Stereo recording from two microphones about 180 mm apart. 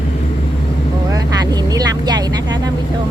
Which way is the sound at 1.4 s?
25° right (ahead or behind).